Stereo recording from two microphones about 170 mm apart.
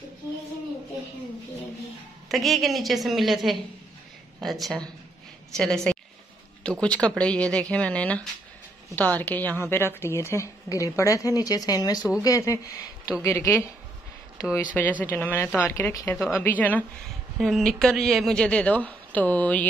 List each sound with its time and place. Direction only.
2.2 s a woman's voice: centre (ahead or behind)